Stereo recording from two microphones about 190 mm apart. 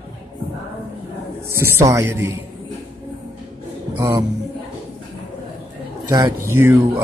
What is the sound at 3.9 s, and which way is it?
Speech, 10° right (ahead or behind).